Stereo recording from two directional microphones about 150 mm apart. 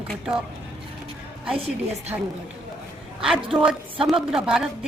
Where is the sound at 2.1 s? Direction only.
20° right (ahead or behind).